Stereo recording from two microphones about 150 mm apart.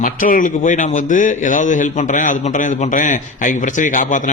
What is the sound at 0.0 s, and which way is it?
A man's voice, 65° left (ahead or behind).